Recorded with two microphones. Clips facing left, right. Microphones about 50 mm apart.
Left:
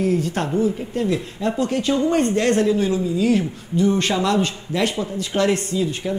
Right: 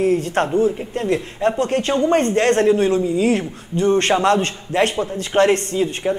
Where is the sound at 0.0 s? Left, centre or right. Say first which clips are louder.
Right 3 dB; right.